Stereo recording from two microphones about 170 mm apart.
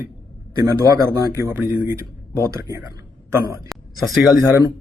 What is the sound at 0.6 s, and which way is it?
A man's voice, 20° right (ahead or behind).